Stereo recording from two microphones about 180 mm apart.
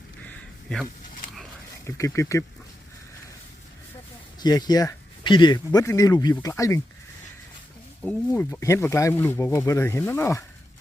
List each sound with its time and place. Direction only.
0.3 s a sound: 5° left (ahead or behind)
2.0 s speech: 15° left (ahead or behind)
4.4 s speech: 20° left (ahead or behind)
8.0 s speech: 10° left (ahead or behind)